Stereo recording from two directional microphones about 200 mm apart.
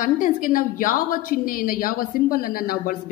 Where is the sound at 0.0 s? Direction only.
40° left (ahead or behind).